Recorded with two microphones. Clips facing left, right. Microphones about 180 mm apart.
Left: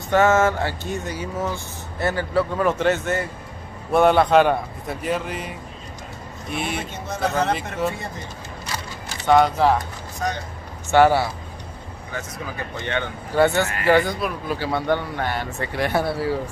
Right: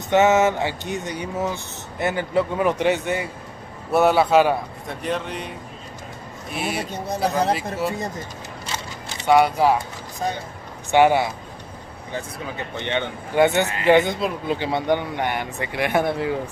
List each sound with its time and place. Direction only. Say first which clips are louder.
0.1 s a man's voice: right 1 dB; 20° right (ahead or behind); by 5.5 s 5° left (ahead or behind)
6.5 s a man's voice: even; 5° right (ahead or behind)
6.8 s speech: right 2 dB; 35° right (ahead or behind)
8.7 s single-lens reflex camera: even; 15° right (ahead or behind)
10.2 s speech: even; 30° right (ahead or behind)
10.9 s a man's voice: even; 15° right (ahead or behind)